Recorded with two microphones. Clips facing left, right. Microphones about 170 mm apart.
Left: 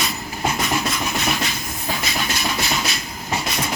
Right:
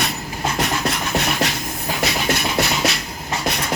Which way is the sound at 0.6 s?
65° right (ahead or behind).